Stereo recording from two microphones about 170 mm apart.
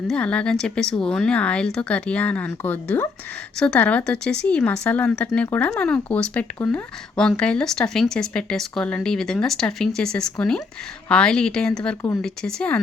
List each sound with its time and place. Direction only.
0.1 s speech: 5° left (ahead or behind)